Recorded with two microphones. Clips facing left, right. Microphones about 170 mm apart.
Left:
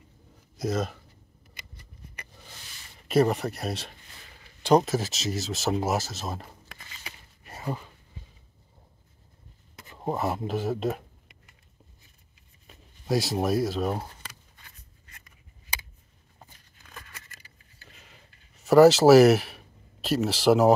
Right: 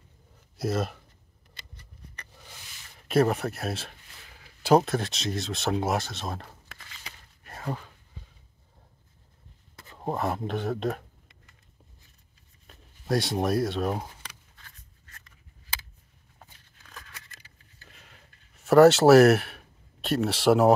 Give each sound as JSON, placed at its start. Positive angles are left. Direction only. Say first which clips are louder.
{"t": 0.6, "sound": "speech", "louder": "even", "side_deg": 0}
{"t": 1.5, "sound": "shuffling cards", "louder": "left 1 dB", "side_deg": 10}
{"t": 3.1, "sound": "speech", "louder": "left 1 dB", "side_deg": 0}
{"t": 6.7, "sound": "a sound", "louder": "left 2 dB", "side_deg": 10}
{"t": 9.9, "sound": "speech", "louder": "left 1 dB", "side_deg": 0}
{"t": 12.6, "sound": "speech", "louder": "left 1 dB", "side_deg": 0}
{"t": 14.6, "sound": "writing", "louder": "even", "side_deg": 15}
{"t": 16.3, "sound": "patter", "louder": "left 1 dB", "side_deg": 5}